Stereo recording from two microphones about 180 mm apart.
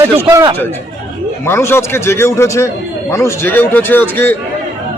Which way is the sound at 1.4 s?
15° left (ahead or behind).